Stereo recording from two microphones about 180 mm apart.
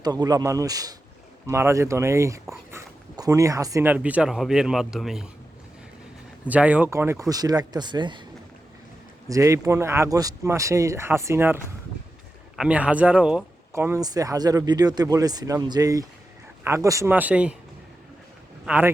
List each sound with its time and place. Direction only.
0.0 s speech: 20° right (ahead or behind); by 5.3 s centre (ahead or behind)
6.4 s speech: 5° right (ahead or behind); by 8.2 s 25° right (ahead or behind)
9.3 s speech: 15° right (ahead or behind)
13.7 s speech: 15° right (ahead or behind)
18.6 s speech: 10° right (ahead or behind)